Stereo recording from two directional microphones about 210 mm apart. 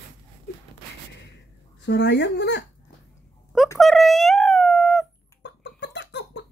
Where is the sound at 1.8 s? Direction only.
55° left (ahead or behind).